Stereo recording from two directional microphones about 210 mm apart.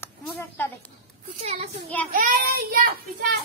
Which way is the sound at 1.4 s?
30° right (ahead or behind).